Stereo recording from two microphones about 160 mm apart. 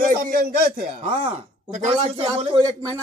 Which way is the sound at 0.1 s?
65° right (ahead or behind).